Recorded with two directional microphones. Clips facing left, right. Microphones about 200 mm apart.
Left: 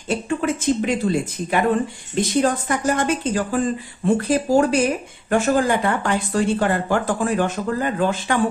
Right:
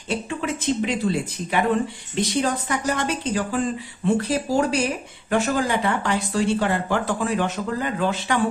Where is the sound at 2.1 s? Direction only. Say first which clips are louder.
Left 4 dB; 50° left (ahead or behind).